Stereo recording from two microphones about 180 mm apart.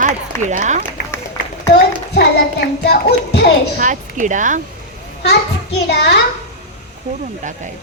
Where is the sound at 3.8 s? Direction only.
45° right (ahead or behind).